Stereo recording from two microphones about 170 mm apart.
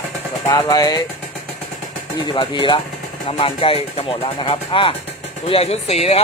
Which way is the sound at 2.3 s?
30° left (ahead or behind).